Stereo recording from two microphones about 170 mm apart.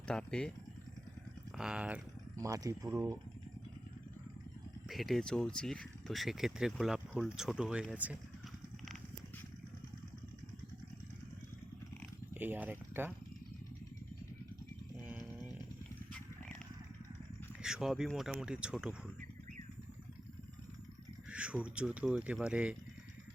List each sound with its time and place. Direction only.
0.1 s speech: 5° left (ahead or behind)
1.5 s speech: 5° right (ahead or behind)
2.3 s speech: 20° right (ahead or behind)
4.9 s speech: centre (ahead or behind)
12.3 s a sound: 10° right (ahead or behind)
17.6 s speech: 5° right (ahead or behind)
21.2 s speech: 5° right (ahead or behind)